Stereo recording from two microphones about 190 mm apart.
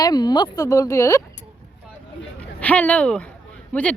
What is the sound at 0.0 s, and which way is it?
Speech, 20° left (ahead or behind).